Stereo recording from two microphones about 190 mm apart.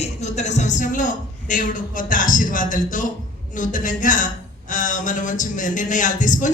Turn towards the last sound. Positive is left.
turn(degrees=40)  # may be behind; listen again after turning